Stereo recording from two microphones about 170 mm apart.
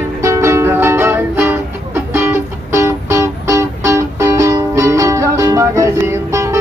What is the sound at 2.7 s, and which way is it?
Music, 15° right (ahead or behind).